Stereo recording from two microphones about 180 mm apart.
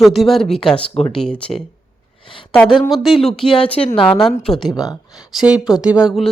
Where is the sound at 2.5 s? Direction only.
5° left (ahead or behind).